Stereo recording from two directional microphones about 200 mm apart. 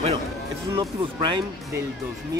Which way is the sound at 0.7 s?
20° right (ahead or behind).